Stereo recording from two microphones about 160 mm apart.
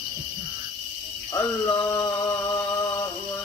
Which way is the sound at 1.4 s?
20° left (ahead or behind).